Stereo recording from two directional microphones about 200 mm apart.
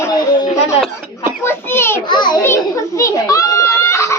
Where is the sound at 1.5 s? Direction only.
10° left (ahead or behind).